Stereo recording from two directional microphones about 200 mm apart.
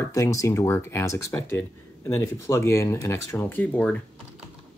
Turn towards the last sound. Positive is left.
turn(degrees=10)  # may be behind; listen again after turning